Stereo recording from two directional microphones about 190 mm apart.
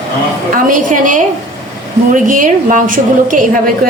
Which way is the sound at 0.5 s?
45° right (ahead or behind).